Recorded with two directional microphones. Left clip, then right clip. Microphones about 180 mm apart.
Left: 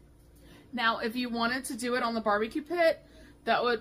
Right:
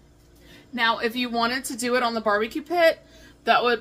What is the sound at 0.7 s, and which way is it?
Speech, 15° left (ahead or behind).